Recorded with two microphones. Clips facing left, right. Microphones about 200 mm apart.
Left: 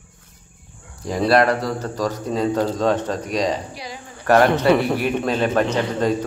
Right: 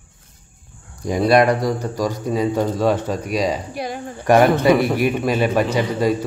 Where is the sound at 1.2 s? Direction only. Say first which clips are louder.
Right 2 dB; 15° right (ahead or behind).